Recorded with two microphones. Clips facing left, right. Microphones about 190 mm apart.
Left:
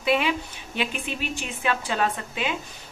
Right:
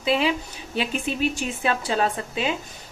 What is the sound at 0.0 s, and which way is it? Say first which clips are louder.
A woman's voice: right 1 dB; 30° right (ahead or behind).